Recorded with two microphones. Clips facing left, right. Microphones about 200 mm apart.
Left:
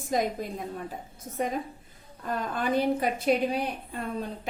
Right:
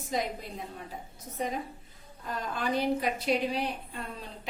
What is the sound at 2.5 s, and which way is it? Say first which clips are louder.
A woman's voice: left 3 dB; 50° left (ahead or behind).